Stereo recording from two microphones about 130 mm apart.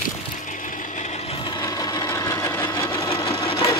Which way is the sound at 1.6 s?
30° left (ahead or behind).